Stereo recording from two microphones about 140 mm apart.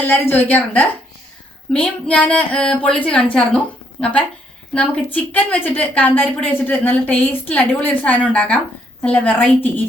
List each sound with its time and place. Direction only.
0.0 s a woman's voice: 15° left (ahead or behind)
4.7 s a woman's voice: 10° left (ahead or behind)